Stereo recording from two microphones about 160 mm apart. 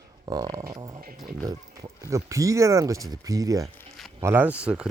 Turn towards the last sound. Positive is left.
turn(degrees=-5)  # may be behind; listen again after turning